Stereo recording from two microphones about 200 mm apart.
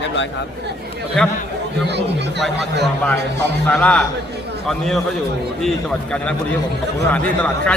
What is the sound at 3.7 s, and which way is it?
A man's voice, 5° left (ahead or behind).